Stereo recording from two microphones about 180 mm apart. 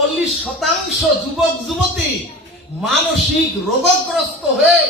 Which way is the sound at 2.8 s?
Centre (ahead or behind).